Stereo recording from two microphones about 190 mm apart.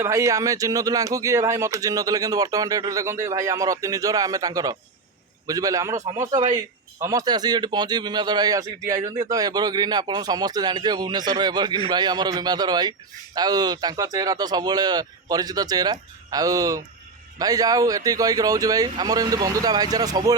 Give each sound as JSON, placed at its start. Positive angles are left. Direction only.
{"t": 0.0, "sound": "a man's voice", "side_deg": -15}